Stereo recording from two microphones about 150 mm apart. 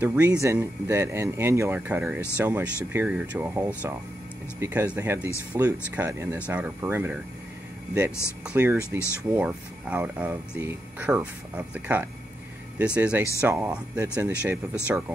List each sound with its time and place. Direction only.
0.0 s speech: 10° right (ahead or behind)
8.5 s speech: 10° right (ahead or behind)